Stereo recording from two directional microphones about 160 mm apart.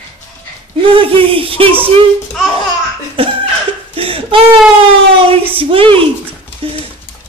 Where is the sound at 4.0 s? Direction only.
35° right (ahead or behind).